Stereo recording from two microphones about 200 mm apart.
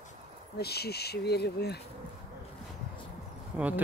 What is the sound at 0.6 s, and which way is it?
Speech, 55° left (ahead or behind).